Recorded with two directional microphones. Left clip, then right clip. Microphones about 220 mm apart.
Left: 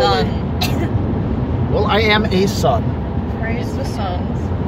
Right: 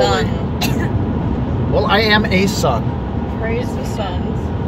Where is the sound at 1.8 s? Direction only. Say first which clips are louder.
Right 1 dB; 15° right (ahead or behind).